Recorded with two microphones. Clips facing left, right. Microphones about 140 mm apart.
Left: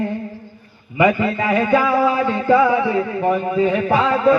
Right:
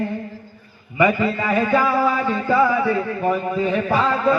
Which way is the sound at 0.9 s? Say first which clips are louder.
Left 2 dB; 20° left (ahead or behind).